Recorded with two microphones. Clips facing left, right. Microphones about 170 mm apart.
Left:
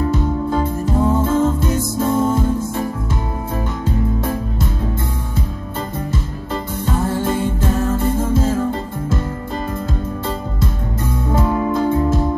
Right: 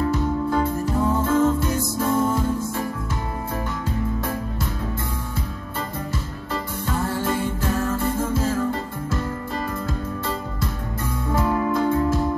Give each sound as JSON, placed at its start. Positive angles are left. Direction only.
{"t": 0.1, "sound": "music", "side_deg": 20}
{"t": 7.2, "sound": "music", "side_deg": 20}
{"t": 11.2, "sound": "music", "side_deg": 25}